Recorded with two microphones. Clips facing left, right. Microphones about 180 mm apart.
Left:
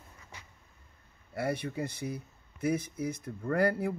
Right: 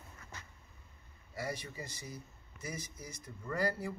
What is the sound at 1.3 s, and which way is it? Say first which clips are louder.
Speech: left 8 dB; 60° left (ahead or behind).